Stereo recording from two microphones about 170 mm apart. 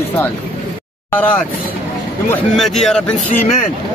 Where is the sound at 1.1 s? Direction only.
10° left (ahead or behind).